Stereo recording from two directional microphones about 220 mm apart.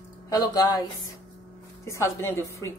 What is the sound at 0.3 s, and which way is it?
Speech, 15° left (ahead or behind).